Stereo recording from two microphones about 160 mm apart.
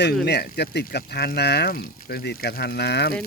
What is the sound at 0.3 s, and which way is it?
Speech, 85° left.